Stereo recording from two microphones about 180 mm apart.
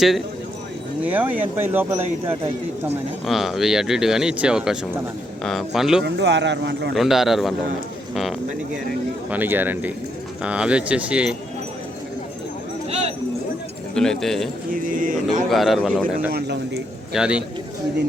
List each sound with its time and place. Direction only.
1.0 s speech: 10° right (ahead or behind)
3.2 s speech: centre (ahead or behind)
6.0 s speech: 70° right (ahead or behind)
6.9 s speech: centre (ahead or behind)
12.9 s a sound: 35° right (ahead or behind)
13.9 s speech: 5° left (ahead or behind)
14.7 s speech: 45° right (ahead or behind)
15.4 s speech: centre (ahead or behind)
16.3 s a man's voice: 65° right (ahead or behind)
17.1 s speech: 5° right (ahead or behind)